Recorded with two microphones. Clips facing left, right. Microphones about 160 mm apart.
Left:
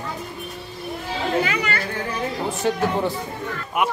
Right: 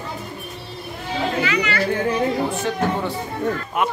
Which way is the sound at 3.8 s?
15° left (ahead or behind).